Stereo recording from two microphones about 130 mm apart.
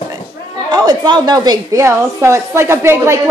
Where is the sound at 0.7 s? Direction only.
35° right (ahead or behind).